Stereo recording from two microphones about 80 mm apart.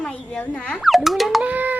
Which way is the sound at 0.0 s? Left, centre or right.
Centre.